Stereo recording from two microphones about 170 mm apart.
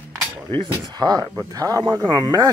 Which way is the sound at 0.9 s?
25° right (ahead or behind).